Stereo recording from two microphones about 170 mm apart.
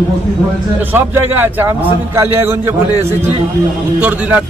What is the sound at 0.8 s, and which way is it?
A man's voice, 10° right (ahead or behind).